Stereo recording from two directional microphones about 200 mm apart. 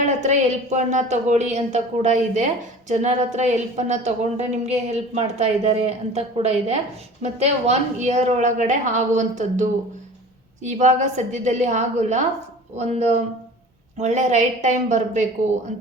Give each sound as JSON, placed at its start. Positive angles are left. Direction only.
{"t": 0.2, "sound": "speech", "side_deg": -35}